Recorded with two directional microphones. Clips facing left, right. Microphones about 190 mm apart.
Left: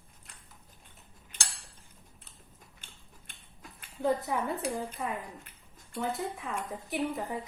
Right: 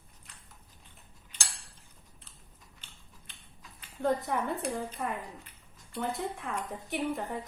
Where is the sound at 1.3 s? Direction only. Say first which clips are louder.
Even; 50° left (ahead or behind).